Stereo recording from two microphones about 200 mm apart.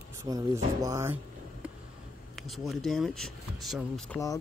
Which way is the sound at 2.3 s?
Centre (ahead or behind).